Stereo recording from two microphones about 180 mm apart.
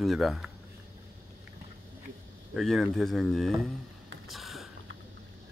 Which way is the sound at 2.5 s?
Centre (ahead or behind).